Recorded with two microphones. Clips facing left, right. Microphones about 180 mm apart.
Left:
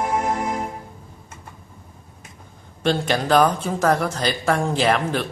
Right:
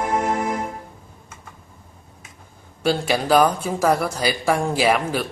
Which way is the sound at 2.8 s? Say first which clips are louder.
Even; 5° right (ahead or behind).